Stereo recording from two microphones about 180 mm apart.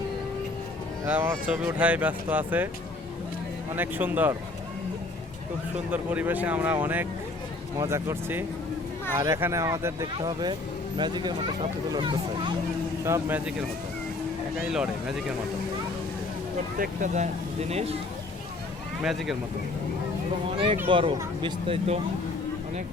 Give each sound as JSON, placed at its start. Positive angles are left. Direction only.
{"t": 1.0, "sound": "speech", "side_deg": -10}
{"t": 3.8, "sound": "speech", "side_deg": -10}
{"t": 5.9, "sound": "speech", "side_deg": -10}
{"t": 13.1, "sound": "speech", "side_deg": -15}
{"t": 14.5, "sound": "speech", "side_deg": 0}
{"t": 16.7, "sound": "speech", "side_deg": -50}
{"t": 19.0, "sound": "speech", "side_deg": 0}
{"t": 20.9, "sound": "speech", "side_deg": -25}